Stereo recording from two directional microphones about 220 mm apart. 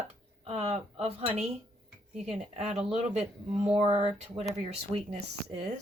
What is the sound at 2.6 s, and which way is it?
A woman's voice, 30° right (ahead or behind).